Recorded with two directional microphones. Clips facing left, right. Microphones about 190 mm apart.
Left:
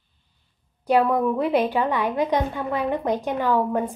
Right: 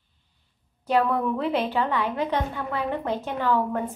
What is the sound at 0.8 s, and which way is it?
A woman's voice, 15° left (ahead or behind).